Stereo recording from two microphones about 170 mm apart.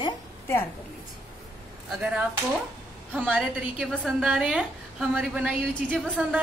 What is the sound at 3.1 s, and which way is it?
A woman's voice, 5° right (ahead or behind).